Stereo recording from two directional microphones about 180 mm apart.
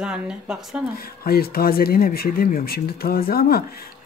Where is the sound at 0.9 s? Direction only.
60° left (ahead or behind).